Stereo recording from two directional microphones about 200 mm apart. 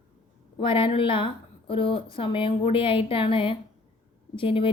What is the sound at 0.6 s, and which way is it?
A woman's voice, 25° left (ahead or behind).